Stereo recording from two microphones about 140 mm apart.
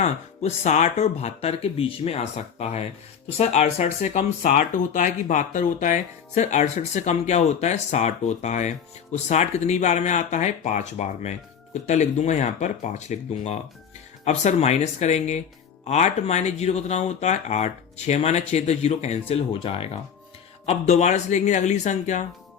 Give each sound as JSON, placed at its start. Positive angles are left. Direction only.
{"t": 0.0, "sound": "speech", "side_deg": 55}